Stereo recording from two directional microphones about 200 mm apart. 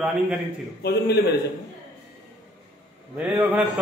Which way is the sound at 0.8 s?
55° left (ahead or behind).